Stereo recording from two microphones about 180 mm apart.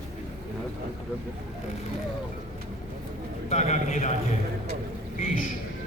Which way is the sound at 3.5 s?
40° left (ahead or behind).